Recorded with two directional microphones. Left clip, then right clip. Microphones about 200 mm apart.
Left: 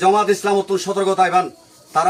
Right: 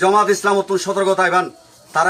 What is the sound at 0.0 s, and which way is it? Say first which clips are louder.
A man's voice: right 1 dB; centre (ahead or behind).